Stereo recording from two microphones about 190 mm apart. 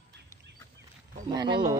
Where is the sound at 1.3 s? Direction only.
25° right (ahead or behind).